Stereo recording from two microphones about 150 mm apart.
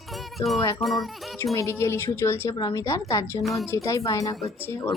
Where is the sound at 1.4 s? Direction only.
20° left (ahead or behind).